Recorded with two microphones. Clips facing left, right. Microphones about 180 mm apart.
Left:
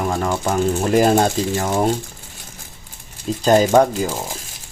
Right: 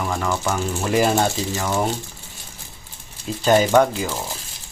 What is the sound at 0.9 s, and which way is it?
Speech, 45° left (ahead or behind).